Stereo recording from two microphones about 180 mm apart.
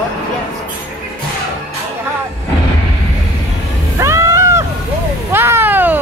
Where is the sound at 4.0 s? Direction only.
15° right (ahead or behind).